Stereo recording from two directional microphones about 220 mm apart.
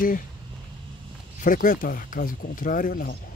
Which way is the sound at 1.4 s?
40° left (ahead or behind).